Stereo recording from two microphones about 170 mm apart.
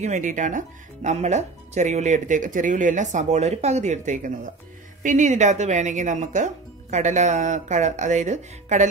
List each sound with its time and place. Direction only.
0.0 s speech: 45° right (ahead or behind)